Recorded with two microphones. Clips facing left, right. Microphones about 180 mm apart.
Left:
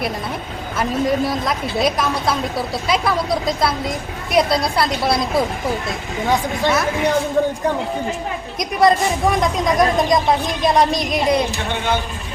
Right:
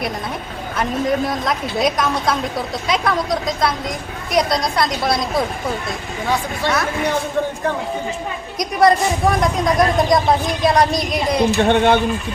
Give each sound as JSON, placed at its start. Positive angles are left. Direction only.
{"t": 0.8, "sound": "speech", "side_deg": 5}
{"t": 6.2, "sound": "speech", "side_deg": 15}
{"t": 8.5, "sound": "speech", "side_deg": 0}
{"t": 11.5, "sound": "speech", "side_deg": -60}